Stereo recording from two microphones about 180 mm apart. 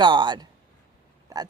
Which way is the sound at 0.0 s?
25° right (ahead or behind).